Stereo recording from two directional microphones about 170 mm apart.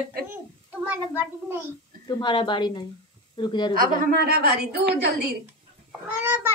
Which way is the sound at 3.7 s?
65° right (ahead or behind).